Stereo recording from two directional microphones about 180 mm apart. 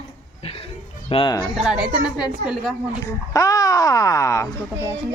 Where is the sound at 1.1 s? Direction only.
25° left (ahead or behind).